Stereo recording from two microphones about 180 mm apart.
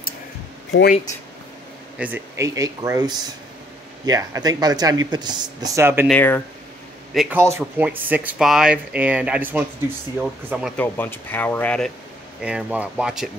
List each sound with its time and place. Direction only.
2.0 s speech: 10° right (ahead or behind)
6.0 s speech: 10° left (ahead or behind)
7.2 s speech: 10° right (ahead or behind)
10.8 s speech: 10° left (ahead or behind)
12.4 s speech: 5° right (ahead or behind)